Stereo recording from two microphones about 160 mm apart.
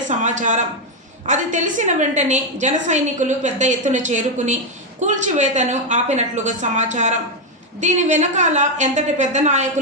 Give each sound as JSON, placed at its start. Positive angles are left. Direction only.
{"t": 0.1, "sound": "a woman's voice", "side_deg": -50}